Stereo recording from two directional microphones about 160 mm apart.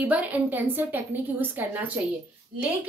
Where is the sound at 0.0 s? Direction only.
10° right (ahead or behind).